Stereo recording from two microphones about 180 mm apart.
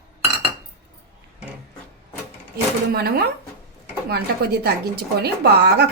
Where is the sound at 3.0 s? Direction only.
60° right (ahead or behind).